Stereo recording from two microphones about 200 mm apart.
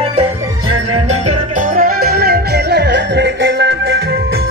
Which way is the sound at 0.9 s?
35° right (ahead or behind).